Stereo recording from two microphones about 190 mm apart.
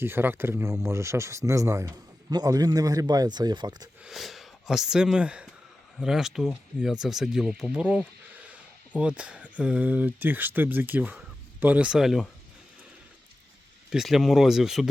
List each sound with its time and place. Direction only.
0.0 s speech: 10° right (ahead or behind)
4.0 s speech: centre (ahead or behind)
13.9 s speech: centre (ahead or behind)